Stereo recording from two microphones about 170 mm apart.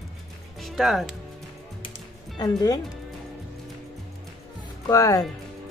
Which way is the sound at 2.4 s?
20° left (ahead or behind).